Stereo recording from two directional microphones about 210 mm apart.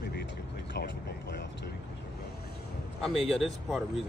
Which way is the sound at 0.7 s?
55° left (ahead or behind).